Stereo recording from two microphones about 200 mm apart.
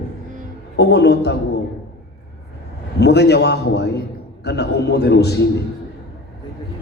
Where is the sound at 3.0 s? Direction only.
55° left (ahead or behind).